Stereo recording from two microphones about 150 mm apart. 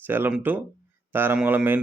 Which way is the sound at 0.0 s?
15° right (ahead or behind).